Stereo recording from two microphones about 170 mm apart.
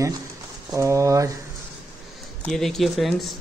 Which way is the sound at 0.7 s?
20° right (ahead or behind).